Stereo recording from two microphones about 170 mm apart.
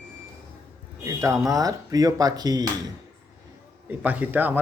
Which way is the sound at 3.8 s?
10° right (ahead or behind).